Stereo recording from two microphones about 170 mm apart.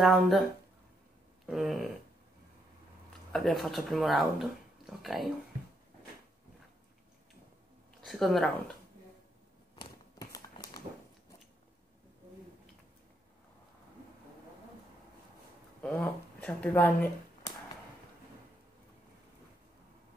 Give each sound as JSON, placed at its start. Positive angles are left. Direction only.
{"t": 0.0, "sound": "speech", "side_deg": 0}
{"t": 3.3, "sound": "speech", "side_deg": 0}
{"t": 8.0, "sound": "speech", "side_deg": 0}
{"t": 9.8, "sound": "a sound", "side_deg": 20}
{"t": 15.8, "sound": "speech", "side_deg": 5}